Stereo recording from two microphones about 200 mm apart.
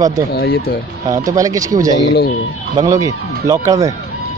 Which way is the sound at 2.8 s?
15° right (ahead or behind).